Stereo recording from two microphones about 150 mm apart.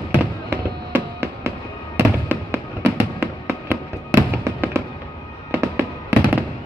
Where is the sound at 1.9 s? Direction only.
15° right (ahead or behind).